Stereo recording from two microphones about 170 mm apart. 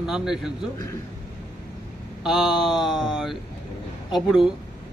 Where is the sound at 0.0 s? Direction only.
5° right (ahead or behind).